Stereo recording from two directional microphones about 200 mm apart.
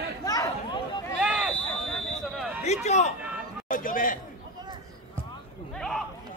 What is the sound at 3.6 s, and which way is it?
Speech, 40° left (ahead or behind).